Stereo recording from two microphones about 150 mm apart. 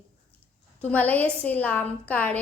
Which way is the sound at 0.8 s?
10° left (ahead or behind).